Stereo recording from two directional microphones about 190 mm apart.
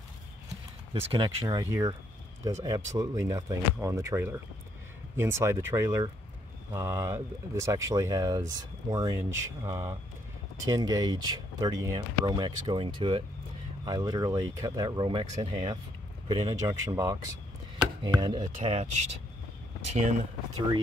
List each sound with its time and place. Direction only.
1.1 s speech: 20° right (ahead or behind); by 20.2 s 40° right (ahead or behind)